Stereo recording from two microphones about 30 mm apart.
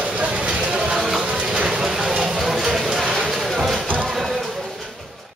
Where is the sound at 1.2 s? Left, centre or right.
Right.